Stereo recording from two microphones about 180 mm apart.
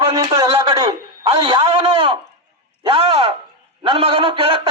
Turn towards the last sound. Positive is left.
turn(degrees=-30)  # may be behind; listen again after turning